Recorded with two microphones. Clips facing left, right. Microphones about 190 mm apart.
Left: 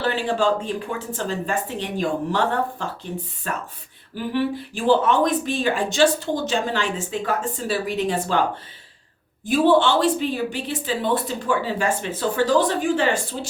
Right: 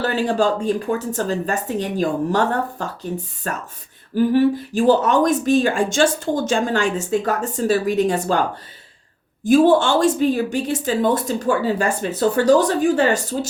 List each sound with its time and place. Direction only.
0.0 s speech: 45° right (ahead or behind)